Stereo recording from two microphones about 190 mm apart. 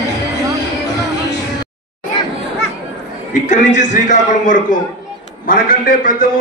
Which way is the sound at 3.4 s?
40° left (ahead or behind).